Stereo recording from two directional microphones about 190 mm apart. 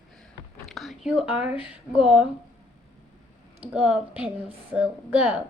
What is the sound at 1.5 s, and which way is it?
Speech, 25° left (ahead or behind).